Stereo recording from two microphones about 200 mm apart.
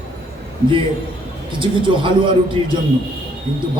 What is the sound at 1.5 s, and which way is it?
A man's voice, 25° right (ahead or behind).